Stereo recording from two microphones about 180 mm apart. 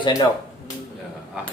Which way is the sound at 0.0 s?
20° left (ahead or behind).